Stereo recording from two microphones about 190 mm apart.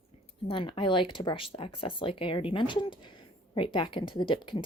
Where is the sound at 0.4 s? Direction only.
25° left (ahead or behind).